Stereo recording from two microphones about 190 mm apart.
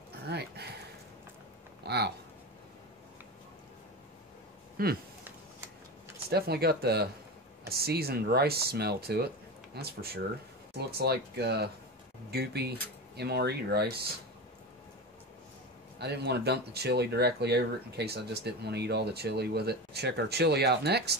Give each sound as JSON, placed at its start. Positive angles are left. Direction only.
{"t": 0.3, "sound": "a sound", "side_deg": -60}
{"t": 4.8, "sound": "speech", "side_deg": -50}
{"t": 6.3, "sound": "speech", "side_deg": -55}
{"t": 16.0, "sound": "speech", "side_deg": -60}